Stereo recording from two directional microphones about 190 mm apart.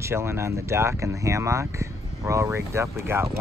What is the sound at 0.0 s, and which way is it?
Speech, 15° right (ahead or behind).